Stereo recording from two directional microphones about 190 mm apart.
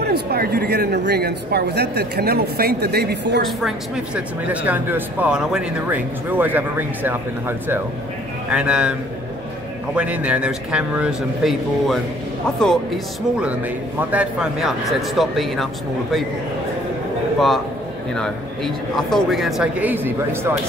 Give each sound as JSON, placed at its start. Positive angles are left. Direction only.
{"t": 0.0, "sound": "speech", "side_deg": -55}
{"t": 3.4, "sound": "a man's voice", "side_deg": -5}
{"t": 9.9, "sound": "a man's voice", "side_deg": -5}
{"t": 18.1, "sound": "a man's voice", "side_deg": 5}